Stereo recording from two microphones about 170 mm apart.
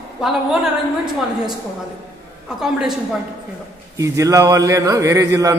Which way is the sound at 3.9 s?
20° right (ahead or behind).